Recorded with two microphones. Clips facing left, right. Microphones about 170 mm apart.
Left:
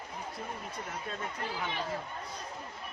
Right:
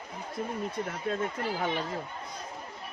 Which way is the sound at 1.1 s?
45° right (ahead or behind).